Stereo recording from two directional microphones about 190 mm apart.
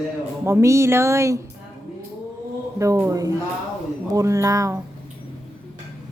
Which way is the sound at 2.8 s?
15° right (ahead or behind).